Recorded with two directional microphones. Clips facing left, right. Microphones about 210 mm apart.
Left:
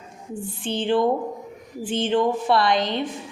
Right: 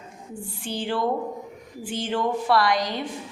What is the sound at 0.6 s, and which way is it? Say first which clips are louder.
A woman's voice: left 5 dB; 20° left (ahead or behind).